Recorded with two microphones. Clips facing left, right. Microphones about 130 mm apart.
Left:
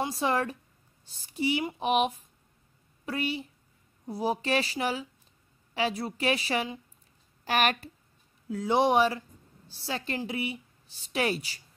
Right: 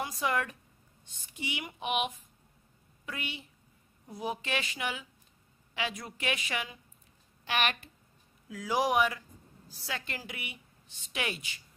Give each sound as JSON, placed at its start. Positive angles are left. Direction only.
{"t": 0.0, "sound": "a woman's voice", "side_deg": 30}
{"t": 8.5, "sound": "a man's voice", "side_deg": 30}